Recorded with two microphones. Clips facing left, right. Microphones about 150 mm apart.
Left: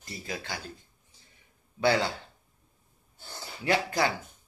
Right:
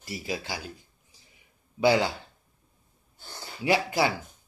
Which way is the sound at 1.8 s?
20° right (ahead or behind).